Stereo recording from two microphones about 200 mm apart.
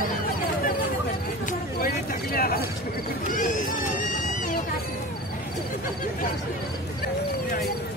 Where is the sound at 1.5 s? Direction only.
45° left (ahead or behind).